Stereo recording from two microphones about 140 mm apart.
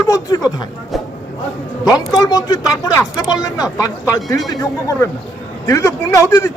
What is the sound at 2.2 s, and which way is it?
Speech, 30° left (ahead or behind).